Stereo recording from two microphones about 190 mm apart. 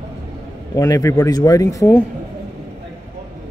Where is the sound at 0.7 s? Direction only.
20° left (ahead or behind).